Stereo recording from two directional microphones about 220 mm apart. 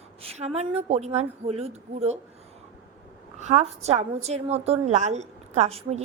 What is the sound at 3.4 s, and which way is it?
A woman's voice, 30° right (ahead or behind).